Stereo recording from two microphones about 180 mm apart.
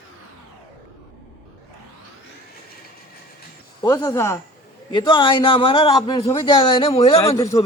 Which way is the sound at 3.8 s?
20° left (ahead or behind).